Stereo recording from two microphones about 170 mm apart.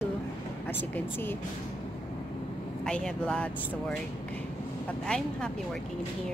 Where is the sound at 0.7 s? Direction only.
10° left (ahead or behind).